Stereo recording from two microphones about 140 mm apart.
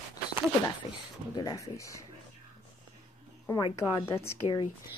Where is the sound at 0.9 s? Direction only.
30° left (ahead or behind).